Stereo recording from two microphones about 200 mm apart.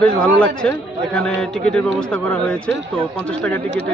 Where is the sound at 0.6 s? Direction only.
5° left (ahead or behind).